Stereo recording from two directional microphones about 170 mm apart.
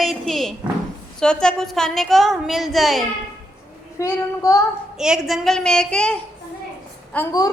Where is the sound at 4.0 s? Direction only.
20° left (ahead or behind).